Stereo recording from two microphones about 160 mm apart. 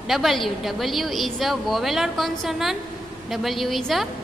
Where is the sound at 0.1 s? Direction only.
Centre (ahead or behind).